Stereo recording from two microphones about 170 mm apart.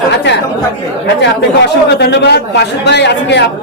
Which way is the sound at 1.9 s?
75° left (ahead or behind).